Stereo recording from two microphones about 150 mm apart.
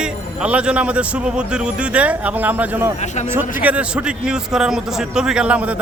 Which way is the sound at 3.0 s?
50° left (ahead or behind).